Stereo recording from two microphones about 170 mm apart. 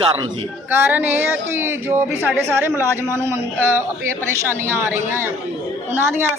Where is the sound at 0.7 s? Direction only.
10° right (ahead or behind).